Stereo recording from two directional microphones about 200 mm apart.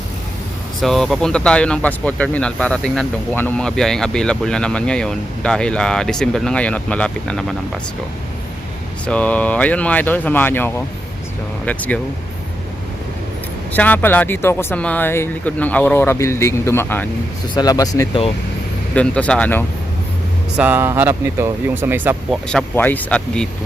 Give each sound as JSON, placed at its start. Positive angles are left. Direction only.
{"t": 0.8, "sound": "speech", "side_deg": 0}
{"t": 9.0, "sound": "speech", "side_deg": 5}
{"t": 13.7, "sound": "speech", "side_deg": 10}
{"t": 18.9, "sound": "speech", "side_deg": 5}
{"t": 20.6, "sound": "speech", "side_deg": -10}
{"t": 22.4, "sound": "speech", "side_deg": 5}